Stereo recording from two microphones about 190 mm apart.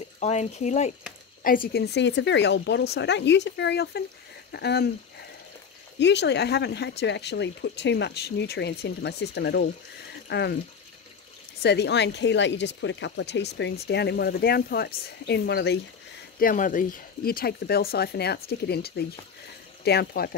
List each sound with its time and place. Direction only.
0.2 s speech: 35° left (ahead or behind)
1.4 s speech: 50° left (ahead or behind)
5.9 s speech: 65° left (ahead or behind)
11.6 s speech: 60° left (ahead or behind)
16.3 s speech: 45° left (ahead or behind)